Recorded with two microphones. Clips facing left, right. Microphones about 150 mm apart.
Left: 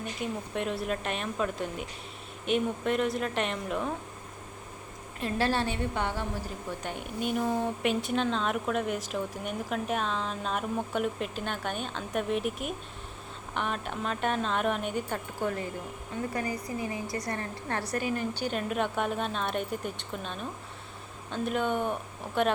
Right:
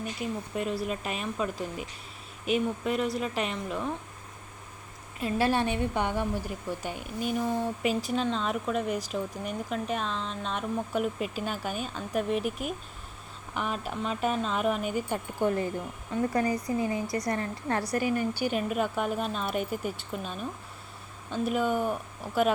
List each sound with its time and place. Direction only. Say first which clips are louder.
0.2 s speech: even; centre (ahead or behind)
5.2 s a woman's voice: right 2 dB; 15° right (ahead or behind)
6.8 s speech: left 2 dB; centre (ahead or behind)
16.3 s a woman's voice: right 6 dB; 30° right (ahead or behind)
17.7 s a woman's voice: right 3 dB; 15° right (ahead or behind)